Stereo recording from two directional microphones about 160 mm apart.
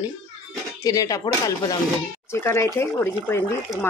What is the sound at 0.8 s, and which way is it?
Speech, 20° left (ahead or behind).